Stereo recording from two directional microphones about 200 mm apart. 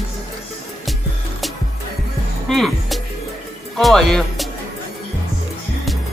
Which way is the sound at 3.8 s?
Centre (ahead or behind).